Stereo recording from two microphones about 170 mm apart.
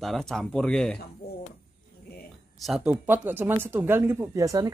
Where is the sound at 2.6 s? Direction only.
Centre (ahead or behind); by 4.7 s 20° right (ahead or behind).